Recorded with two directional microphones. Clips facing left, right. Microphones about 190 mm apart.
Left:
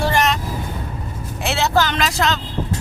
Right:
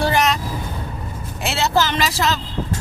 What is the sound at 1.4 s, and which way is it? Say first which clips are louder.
Speech: left 1 dB; centre (ahead or behind).